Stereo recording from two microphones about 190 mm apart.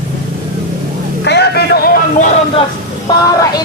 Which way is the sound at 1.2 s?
60° left (ahead or behind).